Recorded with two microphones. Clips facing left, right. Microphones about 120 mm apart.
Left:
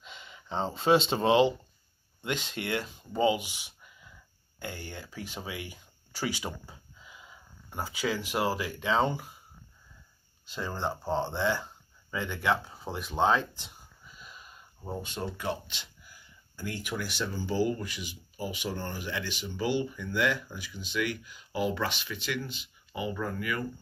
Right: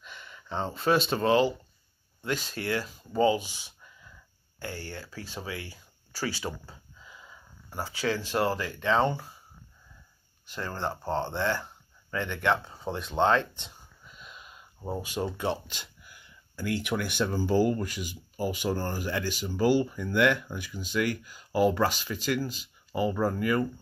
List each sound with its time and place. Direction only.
0.0 s speech: 20° left (ahead or behind)
10.5 s speech: 15° left (ahead or behind)
14.2 s a sound: centre (ahead or behind)
14.9 s speech: 5° right (ahead or behind)
15.6 s speech: 45° right (ahead or behind)
16.0 s speech: 65° right (ahead or behind); by 23.6 s 35° right (ahead or behind)